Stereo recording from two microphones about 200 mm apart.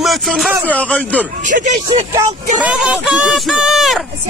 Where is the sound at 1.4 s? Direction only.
40° right (ahead or behind).